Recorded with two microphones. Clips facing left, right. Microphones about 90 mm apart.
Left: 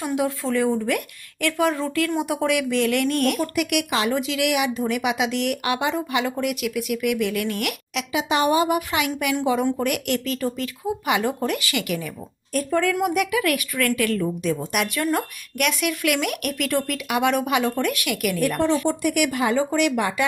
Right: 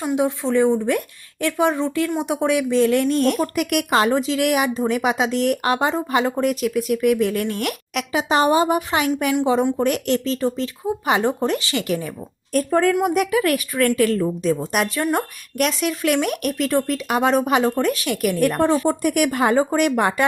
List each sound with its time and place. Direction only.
0.0 s a woman's voice: 20° right (ahead or behind)
3.3 s speech: 40° right (ahead or behind)
9.3 s a woman's voice: 25° right (ahead or behind); by 20.2 s 50° right (ahead or behind)